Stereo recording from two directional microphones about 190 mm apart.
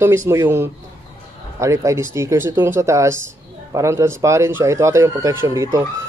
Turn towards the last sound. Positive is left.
turn(degrees=-15)  # may be behind; listen again after turning